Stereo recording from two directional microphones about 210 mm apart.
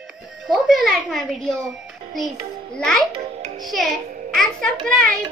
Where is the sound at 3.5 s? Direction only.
Centre (ahead or behind).